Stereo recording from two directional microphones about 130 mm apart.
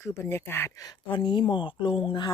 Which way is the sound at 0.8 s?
35° left (ahead or behind).